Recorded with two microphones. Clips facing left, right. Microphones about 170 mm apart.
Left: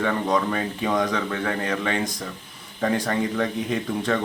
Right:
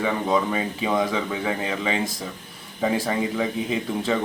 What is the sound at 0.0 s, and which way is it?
Speech, 5° right (ahead or behind).